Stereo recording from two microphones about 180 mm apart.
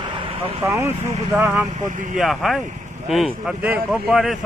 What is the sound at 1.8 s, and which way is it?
Speech, 45° right (ahead or behind).